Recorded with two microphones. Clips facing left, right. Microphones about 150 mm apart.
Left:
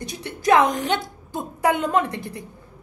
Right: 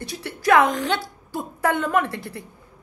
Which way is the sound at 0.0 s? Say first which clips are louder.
Even; 20° left (ahead or behind).